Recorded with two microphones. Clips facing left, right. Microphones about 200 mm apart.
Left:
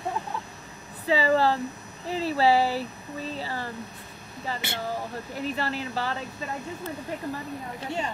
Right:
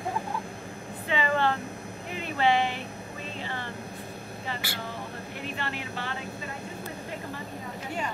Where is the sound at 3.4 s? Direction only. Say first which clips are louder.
Left 3 dB; 35° left (ahead or behind).